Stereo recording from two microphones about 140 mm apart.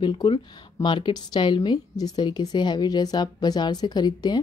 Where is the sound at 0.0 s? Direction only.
35° left (ahead or behind).